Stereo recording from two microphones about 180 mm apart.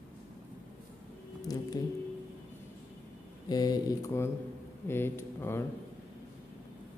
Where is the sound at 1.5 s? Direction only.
20° left (ahead or behind).